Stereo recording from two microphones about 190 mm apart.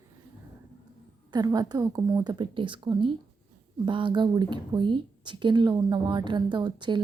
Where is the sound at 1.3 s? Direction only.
20° right (ahead or behind).